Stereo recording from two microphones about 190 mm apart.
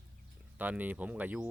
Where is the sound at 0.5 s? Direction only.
10° right (ahead or behind).